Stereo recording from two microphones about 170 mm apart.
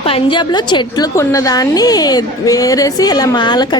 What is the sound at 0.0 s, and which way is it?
A woman's voice, 30° left (ahead or behind).